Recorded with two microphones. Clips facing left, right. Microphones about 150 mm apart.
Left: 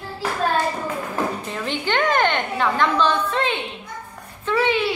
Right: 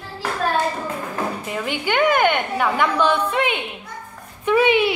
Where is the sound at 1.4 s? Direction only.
10° right (ahead or behind).